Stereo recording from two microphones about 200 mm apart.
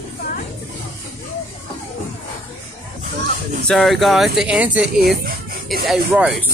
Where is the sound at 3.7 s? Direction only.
Centre (ahead or behind).